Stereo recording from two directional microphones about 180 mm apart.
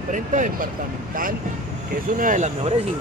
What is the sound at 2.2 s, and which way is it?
Speech, 45° right (ahead or behind).